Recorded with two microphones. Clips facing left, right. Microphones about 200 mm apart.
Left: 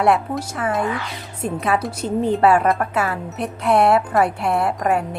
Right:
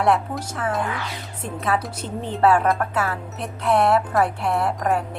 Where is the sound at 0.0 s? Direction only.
10° left (ahead or behind).